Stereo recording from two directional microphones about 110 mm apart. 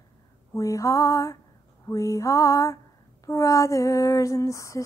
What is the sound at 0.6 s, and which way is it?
Female singing, 30° left (ahead or behind).